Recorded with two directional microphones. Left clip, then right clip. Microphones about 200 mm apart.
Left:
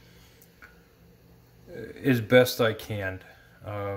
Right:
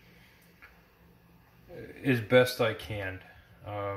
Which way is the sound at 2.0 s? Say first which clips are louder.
Left 3 dB; 55° left (ahead or behind).